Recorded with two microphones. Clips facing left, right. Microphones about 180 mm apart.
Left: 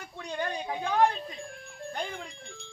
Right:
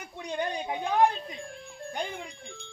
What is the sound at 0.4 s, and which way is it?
Speech, centre (ahead or behind).